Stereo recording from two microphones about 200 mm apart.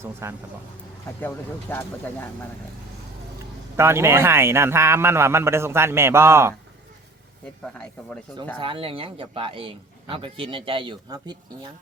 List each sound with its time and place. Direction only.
0.0 s speech: 15° right (ahead or behind)
1.7 s speech: 10° left (ahead or behind)
3.3 s speech: 15° right (ahead or behind)
7.6 s speech: 5° left (ahead or behind)
8.6 s a man's voice: 25° right (ahead or behind)